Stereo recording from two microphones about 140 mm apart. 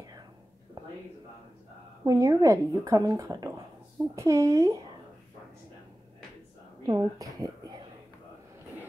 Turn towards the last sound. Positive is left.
turn(degrees=-25)  # may be behind; listen again after turning